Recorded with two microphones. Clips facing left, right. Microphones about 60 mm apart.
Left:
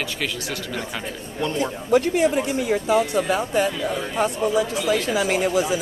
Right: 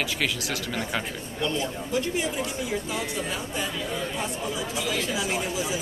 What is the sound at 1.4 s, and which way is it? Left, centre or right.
Speech, left.